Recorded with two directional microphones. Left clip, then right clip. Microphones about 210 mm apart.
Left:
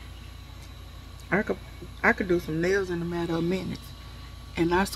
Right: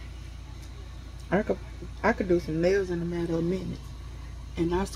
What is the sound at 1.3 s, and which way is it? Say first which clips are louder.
Speech: even; 5° left (ahead or behind).